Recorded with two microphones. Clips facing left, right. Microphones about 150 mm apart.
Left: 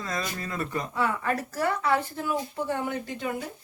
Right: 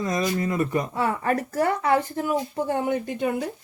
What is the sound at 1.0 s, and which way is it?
Speech, 35° right (ahead or behind).